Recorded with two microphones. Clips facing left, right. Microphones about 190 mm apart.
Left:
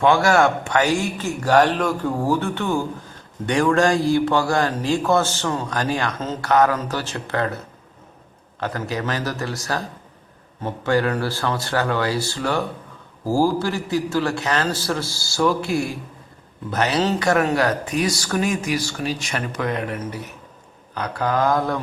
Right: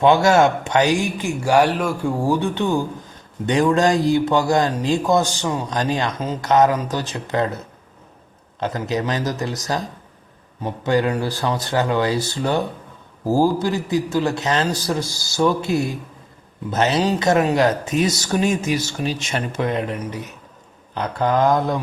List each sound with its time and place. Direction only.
0.0 s a man's voice: 20° right (ahead or behind)
8.6 s a man's voice: 20° right (ahead or behind)